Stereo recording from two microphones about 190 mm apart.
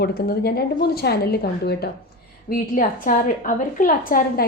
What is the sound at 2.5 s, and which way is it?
A woman's voice, 45° left (ahead or behind).